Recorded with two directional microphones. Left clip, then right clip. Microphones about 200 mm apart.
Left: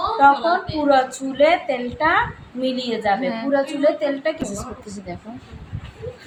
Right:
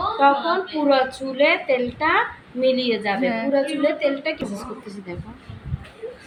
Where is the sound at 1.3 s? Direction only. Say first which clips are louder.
Left 1 dB; 35° left (ahead or behind).